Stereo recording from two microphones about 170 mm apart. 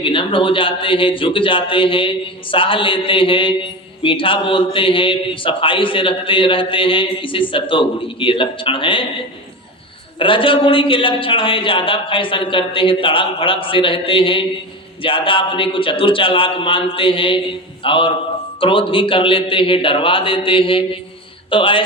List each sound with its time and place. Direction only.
0.0 s a man's voice: 30° left (ahead or behind)
10.2 s a man's voice: 30° left (ahead or behind)